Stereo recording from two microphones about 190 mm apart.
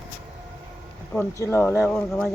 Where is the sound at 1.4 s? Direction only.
15° left (ahead or behind).